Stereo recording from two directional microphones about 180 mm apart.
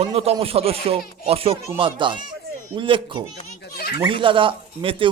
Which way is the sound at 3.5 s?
60° left (ahead or behind).